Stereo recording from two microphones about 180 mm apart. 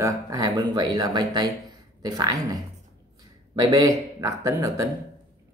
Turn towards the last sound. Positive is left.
turn(degrees=-15)  # may be behind; listen again after turning